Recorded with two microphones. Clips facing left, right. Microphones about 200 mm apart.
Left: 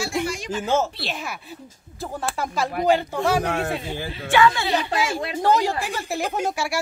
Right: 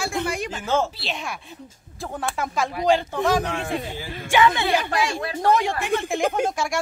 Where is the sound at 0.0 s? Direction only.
60° right (ahead or behind).